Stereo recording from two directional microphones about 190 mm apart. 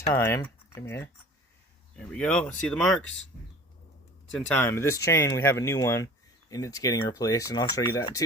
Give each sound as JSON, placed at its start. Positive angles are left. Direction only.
{"t": 0.1, "sound": "speech", "side_deg": 15}
{"t": 4.4, "sound": "speech", "side_deg": 10}